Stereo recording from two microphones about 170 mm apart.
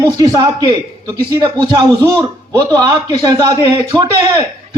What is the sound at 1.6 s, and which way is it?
A man's voice, 20° right (ahead or behind).